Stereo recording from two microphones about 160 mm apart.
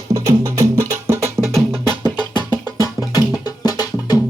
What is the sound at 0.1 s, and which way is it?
Music, 20° right (ahead or behind).